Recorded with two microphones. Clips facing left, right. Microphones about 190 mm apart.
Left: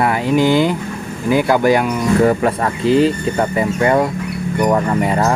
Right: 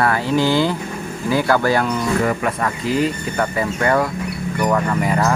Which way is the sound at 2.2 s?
30° left (ahead or behind).